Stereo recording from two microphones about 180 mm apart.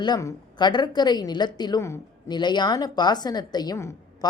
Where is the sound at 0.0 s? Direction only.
20° left (ahead or behind).